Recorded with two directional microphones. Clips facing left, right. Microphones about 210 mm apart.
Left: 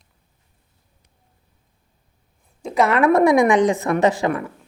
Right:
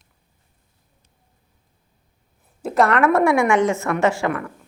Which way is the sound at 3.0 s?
15° left (ahead or behind).